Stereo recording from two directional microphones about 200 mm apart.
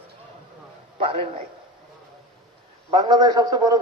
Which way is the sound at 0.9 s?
30° right (ahead or behind).